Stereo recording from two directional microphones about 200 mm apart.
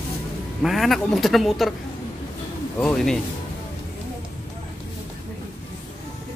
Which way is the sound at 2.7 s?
5° left (ahead or behind).